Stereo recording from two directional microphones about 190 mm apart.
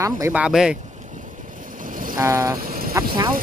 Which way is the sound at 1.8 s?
45° right (ahead or behind).